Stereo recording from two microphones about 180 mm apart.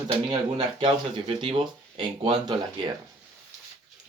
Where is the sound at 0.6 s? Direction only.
30° right (ahead or behind).